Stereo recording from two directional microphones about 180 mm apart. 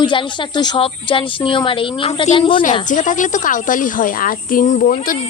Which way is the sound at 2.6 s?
45° left (ahead or behind).